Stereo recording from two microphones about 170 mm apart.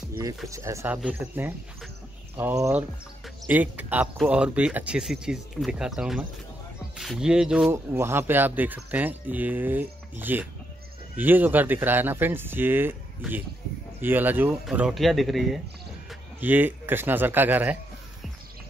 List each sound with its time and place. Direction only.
0.5 s speech: 15° right (ahead or behind)
7.7 s speech: 15° right (ahead or behind)
14.0 s speech: 10° right (ahead or behind)